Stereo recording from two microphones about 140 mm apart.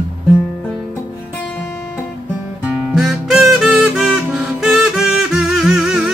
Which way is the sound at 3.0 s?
5° right (ahead or behind).